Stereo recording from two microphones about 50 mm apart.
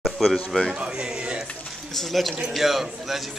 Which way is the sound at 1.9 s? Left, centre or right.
Centre.